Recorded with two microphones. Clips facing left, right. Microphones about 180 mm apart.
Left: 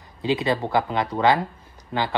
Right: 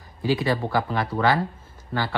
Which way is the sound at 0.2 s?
20° left (ahead or behind).